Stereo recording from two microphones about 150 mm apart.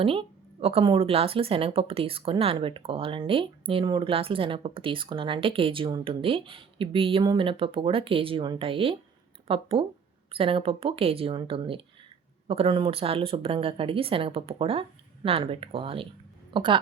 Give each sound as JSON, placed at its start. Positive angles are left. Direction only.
{"t": 0.0, "sound": "a woman's voice", "side_deg": -35}